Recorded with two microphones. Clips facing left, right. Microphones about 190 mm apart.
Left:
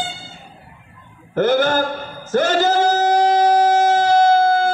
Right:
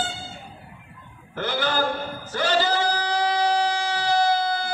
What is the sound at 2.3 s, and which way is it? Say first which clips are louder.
Singing: left 7 dB; 45° left (ahead or behind).